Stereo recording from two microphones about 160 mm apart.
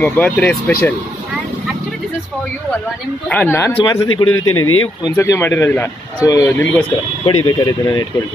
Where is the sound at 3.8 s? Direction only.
25° left (ahead or behind).